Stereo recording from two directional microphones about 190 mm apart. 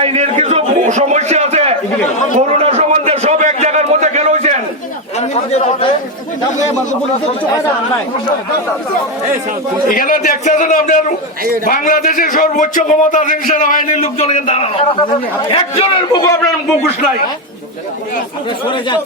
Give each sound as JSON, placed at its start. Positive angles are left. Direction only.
{"t": 0.0, "sound": "a sound", "side_deg": -35}
{"t": 5.2, "sound": "a man's voice", "side_deg": 35}
{"t": 9.9, "sound": "a man's voice", "side_deg": 45}
{"t": 14.0, "sound": "a man's voice", "side_deg": 35}